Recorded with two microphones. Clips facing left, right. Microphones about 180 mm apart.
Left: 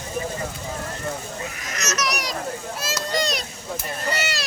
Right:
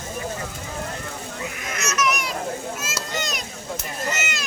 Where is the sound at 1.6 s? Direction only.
40° left (ahead or behind).